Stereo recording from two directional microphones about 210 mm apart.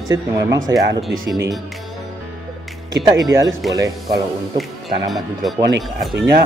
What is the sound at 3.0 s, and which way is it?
Music, 15° right (ahead or behind).